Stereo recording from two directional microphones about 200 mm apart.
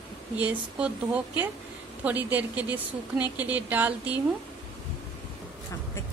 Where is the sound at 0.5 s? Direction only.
5° right (ahead or behind).